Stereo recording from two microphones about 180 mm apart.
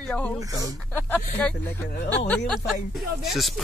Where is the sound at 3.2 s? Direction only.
Centre (ahead or behind).